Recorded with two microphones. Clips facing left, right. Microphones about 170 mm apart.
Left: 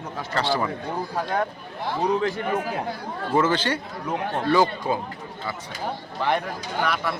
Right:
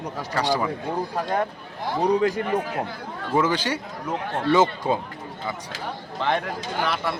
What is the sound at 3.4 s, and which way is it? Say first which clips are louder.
Speech: left 1 dB; 10° right (ahead or behind).